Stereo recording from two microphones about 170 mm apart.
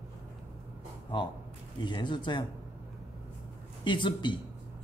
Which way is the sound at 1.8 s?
25° left (ahead or behind).